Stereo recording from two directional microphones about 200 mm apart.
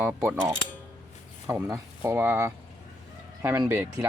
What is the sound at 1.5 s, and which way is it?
Speech, 15° right (ahead or behind).